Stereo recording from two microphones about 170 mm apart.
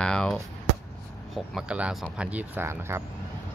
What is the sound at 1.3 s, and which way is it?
Speech, 5° right (ahead or behind).